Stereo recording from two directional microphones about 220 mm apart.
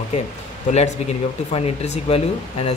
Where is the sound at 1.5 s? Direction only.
30° left (ahead or behind).